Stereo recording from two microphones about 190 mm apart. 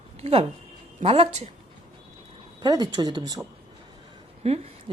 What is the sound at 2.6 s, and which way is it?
Speech, 20° right (ahead or behind).